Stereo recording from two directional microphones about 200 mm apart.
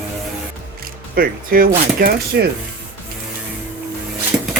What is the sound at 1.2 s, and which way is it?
Speech, 45° right (ahead or behind).